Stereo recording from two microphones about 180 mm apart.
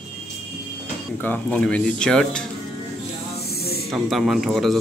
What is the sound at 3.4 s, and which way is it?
Hiss, 60° left (ahead or behind).